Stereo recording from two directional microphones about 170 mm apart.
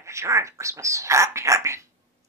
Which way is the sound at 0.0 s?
15° right (ahead or behind).